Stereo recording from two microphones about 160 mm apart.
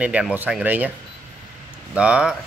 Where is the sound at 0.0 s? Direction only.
10° right (ahead or behind).